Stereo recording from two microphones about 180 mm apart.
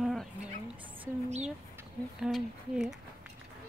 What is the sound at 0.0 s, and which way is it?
Chicken, centre (ahead or behind).